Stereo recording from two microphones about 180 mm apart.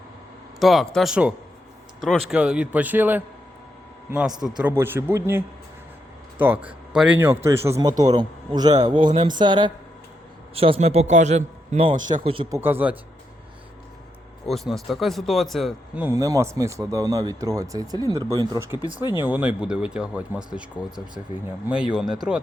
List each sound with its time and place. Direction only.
0.6 s speech: centre (ahead or behind)
4.4 s a man's voice: 5° right (ahead or behind)
6.4 s a man's voice: 10° right (ahead or behind); by 11.9 s 35° right (ahead or behind)
11.9 s speech: 45° right (ahead or behind)
12.2 s speech: 30° right (ahead or behind)
12.5 s a man's voice: 10° right (ahead or behind)
14.4 s speech: centre (ahead or behind)
16.0 s speech: 20° right (ahead or behind)
19.2 s speech: 10° right (ahead or behind)